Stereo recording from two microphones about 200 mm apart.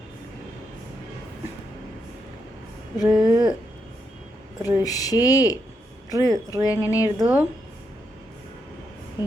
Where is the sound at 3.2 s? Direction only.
20° right (ahead or behind).